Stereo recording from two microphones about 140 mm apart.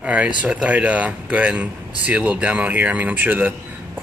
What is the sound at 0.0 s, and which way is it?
Speech, 10° right (ahead or behind).